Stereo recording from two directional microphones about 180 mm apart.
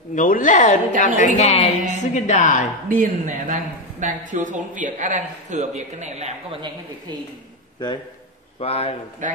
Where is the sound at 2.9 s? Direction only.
45° right (ahead or behind).